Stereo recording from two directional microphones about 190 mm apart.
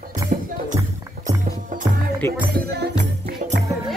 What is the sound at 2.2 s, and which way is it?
Speech, 15° left (ahead or behind).